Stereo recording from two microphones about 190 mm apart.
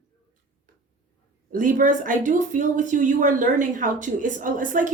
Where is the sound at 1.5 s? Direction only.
45° right (ahead or behind).